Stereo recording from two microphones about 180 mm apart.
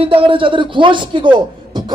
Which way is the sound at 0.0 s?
30° right (ahead or behind).